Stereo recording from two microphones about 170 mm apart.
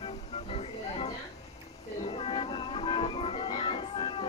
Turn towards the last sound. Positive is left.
turn(degrees=30)  # may be behind; listen again after turning